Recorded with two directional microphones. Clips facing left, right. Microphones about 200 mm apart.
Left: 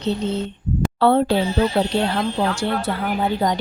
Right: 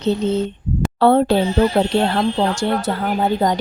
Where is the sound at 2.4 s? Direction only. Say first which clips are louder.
Right 3 dB; 45° right (ahead or behind).